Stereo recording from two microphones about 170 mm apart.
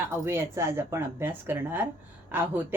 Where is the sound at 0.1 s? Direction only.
15° right (ahead or behind).